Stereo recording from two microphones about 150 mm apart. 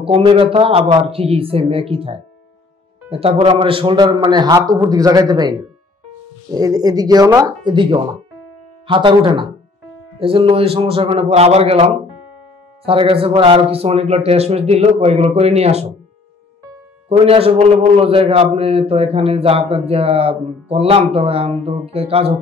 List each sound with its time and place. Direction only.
0.0 s a man's voice: 35° right (ahead or behind)
17.1 s a man's voice: 40° right (ahead or behind)